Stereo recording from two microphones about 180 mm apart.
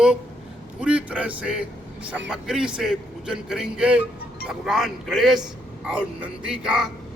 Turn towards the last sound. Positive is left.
turn(degrees=-5)  # may be behind; listen again after turning